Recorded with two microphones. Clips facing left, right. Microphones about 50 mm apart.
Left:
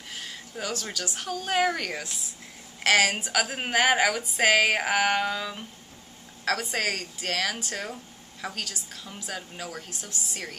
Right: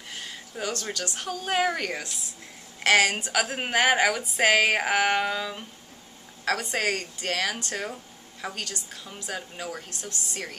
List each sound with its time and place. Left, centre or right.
0.1 s speech: centre